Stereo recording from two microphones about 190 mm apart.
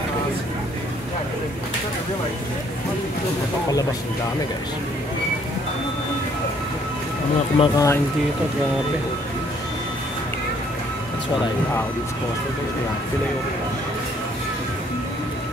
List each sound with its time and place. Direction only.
7.5 s speech: 25° left (ahead or behind)